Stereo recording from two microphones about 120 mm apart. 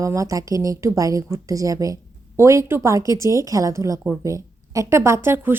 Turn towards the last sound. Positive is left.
turn(degrees=-20)  # may be behind; listen again after turning